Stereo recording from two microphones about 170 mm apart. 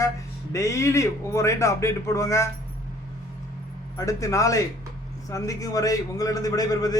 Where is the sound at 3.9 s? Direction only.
20° left (ahead or behind).